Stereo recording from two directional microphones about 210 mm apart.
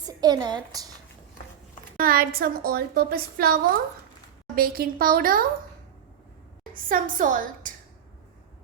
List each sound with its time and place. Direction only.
0.2 s a woman's voice: 20° right (ahead or behind)
2.0 s a woman's voice: 45° right (ahead or behind)
6.8 s a woman's voice: 40° right (ahead or behind)